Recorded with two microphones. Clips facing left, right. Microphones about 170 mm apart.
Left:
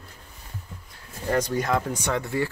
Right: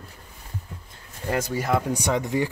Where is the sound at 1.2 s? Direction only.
5° right (ahead or behind).